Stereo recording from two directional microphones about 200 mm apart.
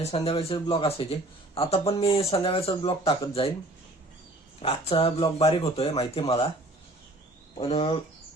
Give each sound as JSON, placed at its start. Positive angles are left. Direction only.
{"t": 0.0, "sound": "speech", "side_deg": 30}
{"t": 4.6, "sound": "speech", "side_deg": 30}
{"t": 7.6, "sound": "speech", "side_deg": 30}